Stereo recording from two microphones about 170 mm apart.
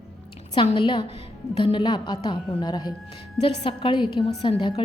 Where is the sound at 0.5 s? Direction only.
30° left (ahead or behind).